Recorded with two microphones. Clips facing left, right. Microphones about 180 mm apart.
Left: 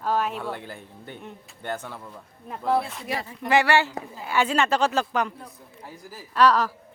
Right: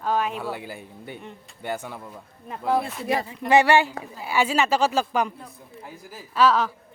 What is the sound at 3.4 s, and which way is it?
A woman's voice, 20° right (ahead or behind).